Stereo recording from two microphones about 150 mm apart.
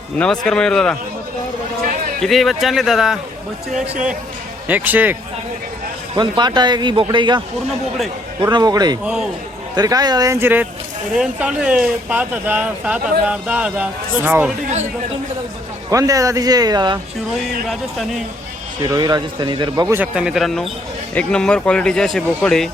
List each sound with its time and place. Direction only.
0.2 s speech: 5° left (ahead or behind)
2.2 s speech: centre (ahead or behind)
4.7 s speech: 10° right (ahead or behind)
6.1 s speech: 30° right (ahead or behind)
7.7 s speech: centre (ahead or behind)
8.5 s speech: 25° right (ahead or behind)
9.0 s speech: 5° right (ahead or behind)
9.7 s speech: 25° right (ahead or behind)
15.9 s speech: 20° right (ahead or behind)
17.7 s speech: centre (ahead or behind)
18.8 s speech: 25° right (ahead or behind)
20.0 s speech: 5° right (ahead or behind)